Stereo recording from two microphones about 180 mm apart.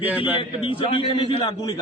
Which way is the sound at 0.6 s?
30° left (ahead or behind).